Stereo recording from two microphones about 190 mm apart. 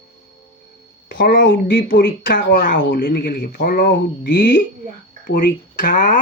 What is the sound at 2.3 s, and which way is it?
Speech, 45° left (ahead or behind).